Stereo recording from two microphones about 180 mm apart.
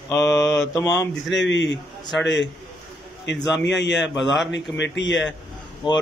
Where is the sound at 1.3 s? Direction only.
85° left.